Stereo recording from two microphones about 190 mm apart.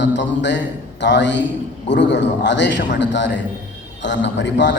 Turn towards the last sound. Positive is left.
turn(degrees=70)  # may be behind; listen again after turning